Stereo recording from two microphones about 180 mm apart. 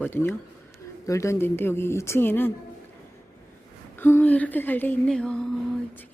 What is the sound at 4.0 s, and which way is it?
A woman's voice, 10° left (ahead or behind).